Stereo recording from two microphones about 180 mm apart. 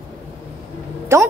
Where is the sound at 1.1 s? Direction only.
15° right (ahead or behind).